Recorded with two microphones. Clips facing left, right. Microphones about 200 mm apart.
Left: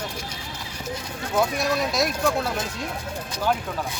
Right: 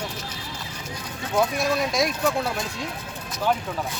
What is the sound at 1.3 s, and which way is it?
Speech, 5° left (ahead or behind).